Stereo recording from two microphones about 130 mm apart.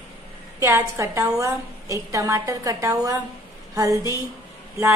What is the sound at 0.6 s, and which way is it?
A woman's voice, 20° right (ahead or behind).